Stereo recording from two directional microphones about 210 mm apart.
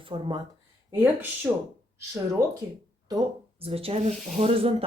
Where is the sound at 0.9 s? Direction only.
10° right (ahead or behind).